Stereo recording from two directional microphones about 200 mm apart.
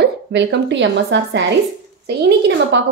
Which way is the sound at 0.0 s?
60° right (ahead or behind).